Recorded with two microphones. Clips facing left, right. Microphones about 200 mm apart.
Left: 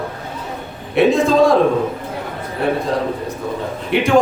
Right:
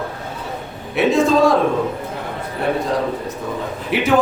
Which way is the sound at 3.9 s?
Centre (ahead or behind).